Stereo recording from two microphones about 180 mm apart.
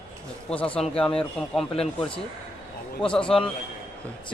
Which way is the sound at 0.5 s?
5° left (ahead or behind).